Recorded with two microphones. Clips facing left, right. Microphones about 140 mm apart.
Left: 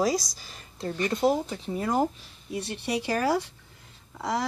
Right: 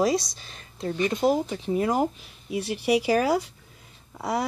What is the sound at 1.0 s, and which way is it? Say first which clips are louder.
Speech: right 2 dB; 15° right (ahead or behind).